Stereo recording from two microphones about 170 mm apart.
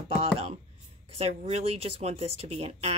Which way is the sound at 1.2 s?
35° right (ahead or behind).